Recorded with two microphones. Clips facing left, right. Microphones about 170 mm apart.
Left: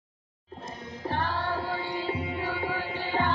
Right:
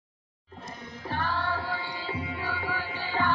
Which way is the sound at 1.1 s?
45° left (ahead or behind).